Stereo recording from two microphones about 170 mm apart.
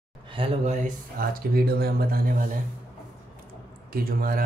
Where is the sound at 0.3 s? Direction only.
35° right (ahead or behind); by 2.6 s 55° right (ahead or behind).